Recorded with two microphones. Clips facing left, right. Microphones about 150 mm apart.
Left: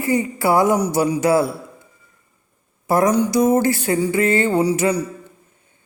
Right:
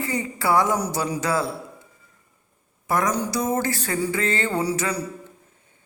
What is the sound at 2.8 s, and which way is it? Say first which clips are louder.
A woman's voice: left 7 dB; 30° left (ahead or behind).